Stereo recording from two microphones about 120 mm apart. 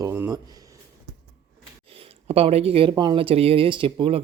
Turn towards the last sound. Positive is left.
turn(degrees=-45)  # may be behind; listen again after turning